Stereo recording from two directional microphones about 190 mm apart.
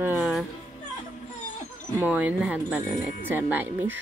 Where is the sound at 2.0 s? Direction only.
10° right (ahead or behind).